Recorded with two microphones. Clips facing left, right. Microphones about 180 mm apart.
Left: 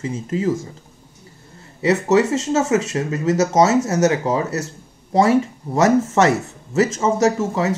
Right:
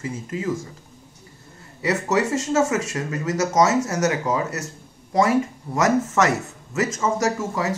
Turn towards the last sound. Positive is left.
turn(degrees=25)  # may be behind; listen again after turning